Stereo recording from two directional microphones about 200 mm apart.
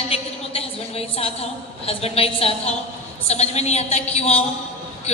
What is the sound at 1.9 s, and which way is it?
A woman's voice, 30° left (ahead or behind).